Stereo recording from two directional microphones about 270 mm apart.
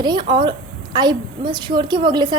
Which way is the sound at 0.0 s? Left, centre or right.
Centre.